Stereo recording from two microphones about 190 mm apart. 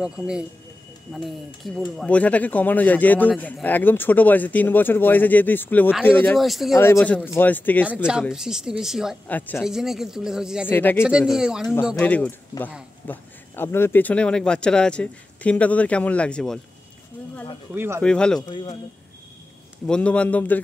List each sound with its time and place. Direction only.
0.0 s a man's voice: 5° right (ahead or behind)
6.7 s a man's voice: 15° left (ahead or behind)
8.1 s speech: 5° right (ahead or behind)
10.7 s a man's voice: 10° left (ahead or behind)
11.0 s a man's voice: 5° right (ahead or behind)
17.7 s speech: 15° right (ahead or behind)
18.0 s speech: 5° left (ahead or behind)
18.5 s speech: 25° left (ahead or behind)
19.9 s a man's voice: 5° left (ahead or behind)